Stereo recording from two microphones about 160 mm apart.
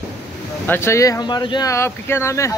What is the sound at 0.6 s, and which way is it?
Speech, 15° left (ahead or behind).